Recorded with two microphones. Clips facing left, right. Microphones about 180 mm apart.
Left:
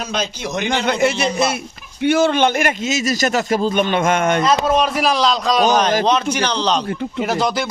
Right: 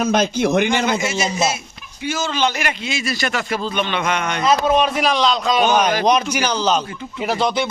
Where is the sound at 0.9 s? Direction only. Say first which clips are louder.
Left 3 dB; 60° left (ahead or behind).